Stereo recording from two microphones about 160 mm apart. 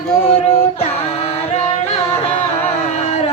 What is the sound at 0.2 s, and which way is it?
Child singing, 35° left (ahead or behind).